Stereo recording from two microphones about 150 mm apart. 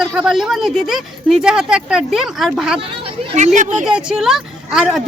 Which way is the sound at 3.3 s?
55° right (ahead or behind).